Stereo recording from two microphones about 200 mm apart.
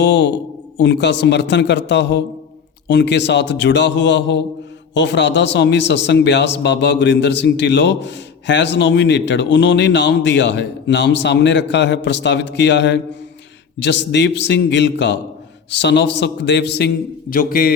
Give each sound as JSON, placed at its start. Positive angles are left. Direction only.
{"t": 0.0, "sound": "a man's voice", "side_deg": 65}